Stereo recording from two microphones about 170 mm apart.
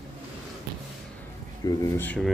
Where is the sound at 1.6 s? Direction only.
20° left (ahead or behind).